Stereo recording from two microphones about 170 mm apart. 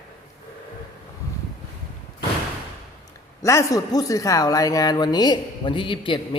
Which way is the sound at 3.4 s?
20° left (ahead or behind).